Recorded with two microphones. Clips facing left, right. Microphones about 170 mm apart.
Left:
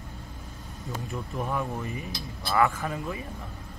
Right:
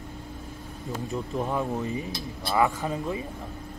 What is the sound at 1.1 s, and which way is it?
Speech, 20° right (ahead or behind).